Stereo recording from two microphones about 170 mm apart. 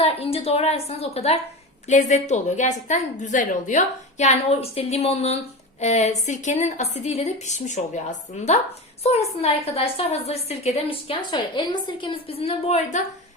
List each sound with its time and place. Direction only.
0.0 s a woman's voice: 35° left (ahead or behind)